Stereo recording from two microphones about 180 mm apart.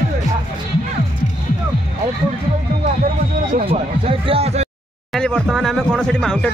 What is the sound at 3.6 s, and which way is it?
Speech, 30° right (ahead or behind).